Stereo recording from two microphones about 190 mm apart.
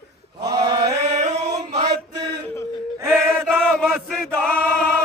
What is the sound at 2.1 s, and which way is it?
Male singing, 20° right (ahead or behind).